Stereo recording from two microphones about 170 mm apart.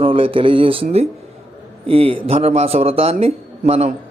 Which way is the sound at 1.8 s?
35° right (ahead or behind).